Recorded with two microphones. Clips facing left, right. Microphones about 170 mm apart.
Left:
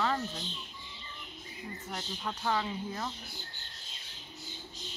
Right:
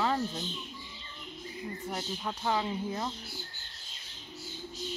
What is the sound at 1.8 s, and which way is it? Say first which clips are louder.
Speech: right 2 dB; 10° right (ahead or behind).